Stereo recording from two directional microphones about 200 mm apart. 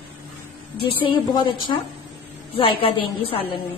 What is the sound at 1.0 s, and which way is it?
A woman's voice, 25° left (ahead or behind).